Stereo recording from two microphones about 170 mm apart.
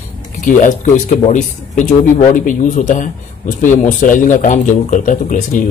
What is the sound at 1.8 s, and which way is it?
Speech, 50° left (ahead or behind).